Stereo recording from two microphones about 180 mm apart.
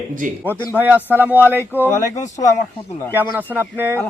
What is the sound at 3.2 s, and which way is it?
Speech, 10° right (ahead or behind).